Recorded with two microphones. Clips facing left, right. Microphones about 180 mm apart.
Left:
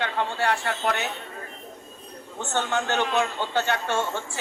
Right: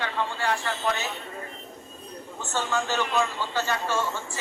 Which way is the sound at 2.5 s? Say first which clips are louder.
Left 2 dB; 70° left (ahead or behind).